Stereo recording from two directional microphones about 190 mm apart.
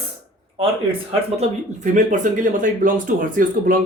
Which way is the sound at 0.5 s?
30° right (ahead or behind).